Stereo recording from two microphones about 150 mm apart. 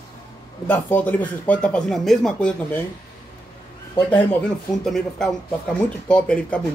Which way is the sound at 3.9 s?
30° left (ahead or behind).